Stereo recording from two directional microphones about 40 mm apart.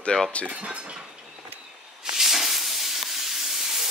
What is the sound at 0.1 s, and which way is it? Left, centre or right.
Speech, centre.